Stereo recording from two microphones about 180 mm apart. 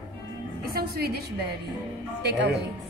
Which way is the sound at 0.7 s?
60° right (ahead or behind).